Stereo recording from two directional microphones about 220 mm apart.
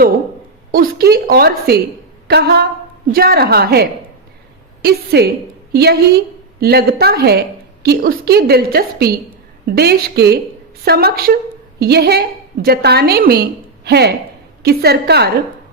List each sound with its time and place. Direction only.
0.7 s a woman's voice: 45° right (ahead or behind)